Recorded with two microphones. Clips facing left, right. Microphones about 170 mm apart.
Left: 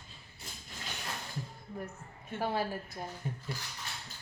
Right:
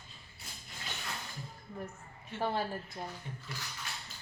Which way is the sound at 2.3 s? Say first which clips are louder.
Left 1 dB; 10° left (ahead or behind).